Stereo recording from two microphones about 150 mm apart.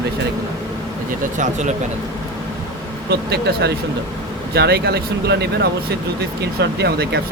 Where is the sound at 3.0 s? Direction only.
90° right.